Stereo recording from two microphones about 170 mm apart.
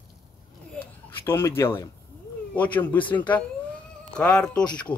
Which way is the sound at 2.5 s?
10° left (ahead or behind).